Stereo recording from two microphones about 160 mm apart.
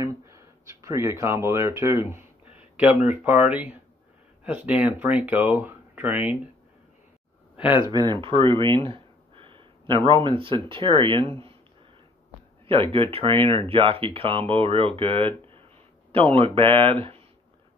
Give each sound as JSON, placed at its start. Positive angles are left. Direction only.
{"t": 0.0, "sound": "speech", "side_deg": -20}
{"t": 7.5, "sound": "speech", "side_deg": 30}
{"t": 7.8, "sound": "speech", "side_deg": -25}
{"t": 12.6, "sound": "speech", "side_deg": -35}